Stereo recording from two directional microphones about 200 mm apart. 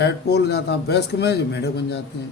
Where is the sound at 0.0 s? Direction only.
55° left (ahead or behind).